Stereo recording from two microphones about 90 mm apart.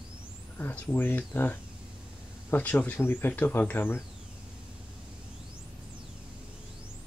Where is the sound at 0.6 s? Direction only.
20° left (ahead or behind).